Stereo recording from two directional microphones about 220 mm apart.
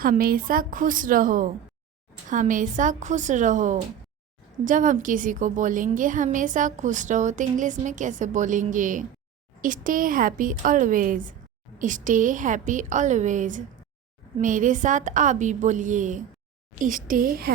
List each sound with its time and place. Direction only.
0.0 s a woman's voice: 40° right (ahead or behind)